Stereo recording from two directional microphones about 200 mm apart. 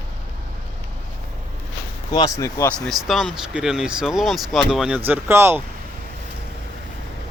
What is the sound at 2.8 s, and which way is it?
Speech, centre (ahead or behind).